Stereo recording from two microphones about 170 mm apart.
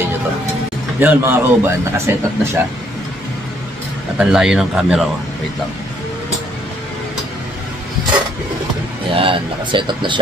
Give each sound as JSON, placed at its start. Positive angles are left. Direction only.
{"t": 0.9, "sound": "speech", "side_deg": -15}
{"t": 4.2, "sound": "speech", "side_deg": -5}
{"t": 9.1, "sound": "speech", "side_deg": -30}